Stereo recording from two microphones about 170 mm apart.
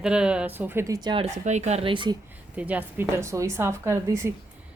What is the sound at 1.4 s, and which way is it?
Speech, 40° right (ahead or behind).